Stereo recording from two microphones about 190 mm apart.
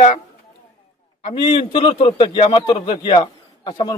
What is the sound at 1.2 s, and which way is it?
A man's voice, 30° left (ahead or behind).